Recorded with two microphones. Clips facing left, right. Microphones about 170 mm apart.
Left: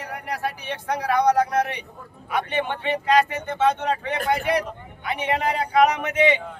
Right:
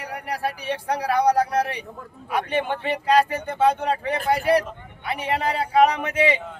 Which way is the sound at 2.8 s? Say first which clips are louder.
Even; 35° right (ahead or behind).